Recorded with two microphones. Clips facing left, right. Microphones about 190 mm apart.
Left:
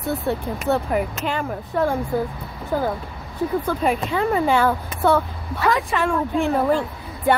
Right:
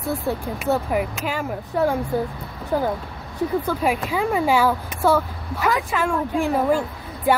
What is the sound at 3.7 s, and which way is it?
A woman's voice, 10° right (ahead or behind).